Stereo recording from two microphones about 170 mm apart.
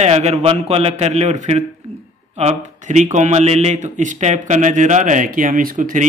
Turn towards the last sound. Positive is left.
turn(degrees=-50)  # may be behind; listen again after turning